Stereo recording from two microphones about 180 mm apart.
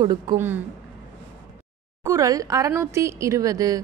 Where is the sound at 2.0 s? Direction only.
20° right (ahead or behind).